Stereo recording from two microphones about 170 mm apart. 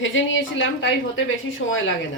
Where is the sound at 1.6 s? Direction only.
90° left.